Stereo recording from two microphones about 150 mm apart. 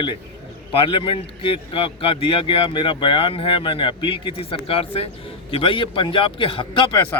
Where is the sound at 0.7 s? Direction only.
35° left (ahead or behind).